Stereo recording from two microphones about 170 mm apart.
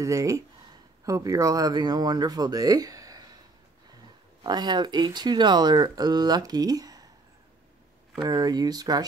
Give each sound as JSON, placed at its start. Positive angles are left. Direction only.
{"t": 0.0, "sound": "speech", "side_deg": -20}
{"t": 4.4, "sound": "speech", "side_deg": -25}
{"t": 8.2, "sound": "speech", "side_deg": -25}